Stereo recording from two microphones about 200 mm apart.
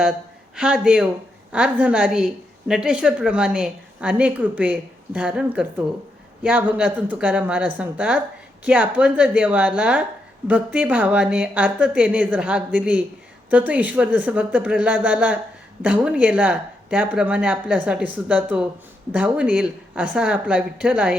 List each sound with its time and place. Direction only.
0.5 s a woman's voice: 5° right (ahead or behind)